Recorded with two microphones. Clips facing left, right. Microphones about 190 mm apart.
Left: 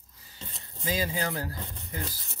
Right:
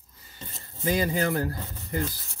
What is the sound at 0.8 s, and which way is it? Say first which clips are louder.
Speech: right 5 dB; 60° right (ahead or behind).